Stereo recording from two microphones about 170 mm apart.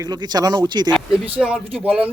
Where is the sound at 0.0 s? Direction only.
25° right (ahead or behind).